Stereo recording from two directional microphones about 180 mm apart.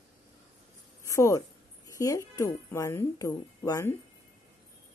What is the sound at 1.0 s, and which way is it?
A woman's voice, 15° left (ahead or behind).